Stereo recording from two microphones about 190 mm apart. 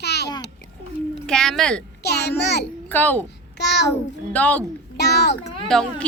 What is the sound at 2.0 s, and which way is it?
Speech, 60° left (ahead or behind).